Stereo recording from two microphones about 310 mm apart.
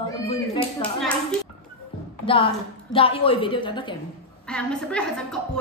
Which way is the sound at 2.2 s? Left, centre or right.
Centre.